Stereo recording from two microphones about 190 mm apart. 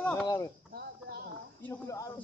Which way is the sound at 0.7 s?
55° right (ahead or behind).